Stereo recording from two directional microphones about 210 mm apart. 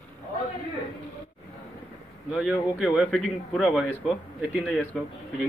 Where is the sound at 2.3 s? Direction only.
Centre (ahead or behind).